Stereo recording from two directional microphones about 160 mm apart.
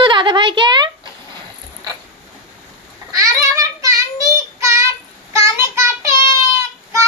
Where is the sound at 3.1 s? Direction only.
20° right (ahead or behind).